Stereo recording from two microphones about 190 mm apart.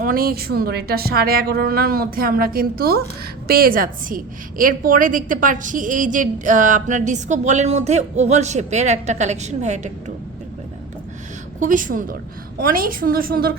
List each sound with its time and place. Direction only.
0.0 s a woman's voice: 50° right (ahead or behind)
11.6 s a woman's voice: 45° right (ahead or behind)